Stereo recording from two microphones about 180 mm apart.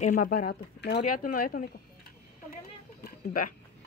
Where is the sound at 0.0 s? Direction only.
50° left (ahead or behind).